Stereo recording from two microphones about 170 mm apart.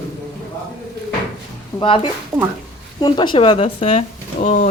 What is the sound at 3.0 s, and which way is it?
Speech, 25° left (ahead or behind).